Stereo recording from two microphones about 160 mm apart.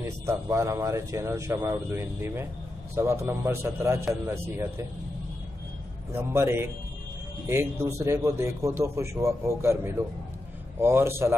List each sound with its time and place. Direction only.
0.0 s a man's voice: 15° right (ahead or behind)
6.1 s a man's voice: 15° right (ahead or behind)